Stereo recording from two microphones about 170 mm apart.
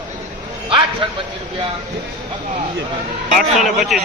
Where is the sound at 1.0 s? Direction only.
30° right (ahead or behind).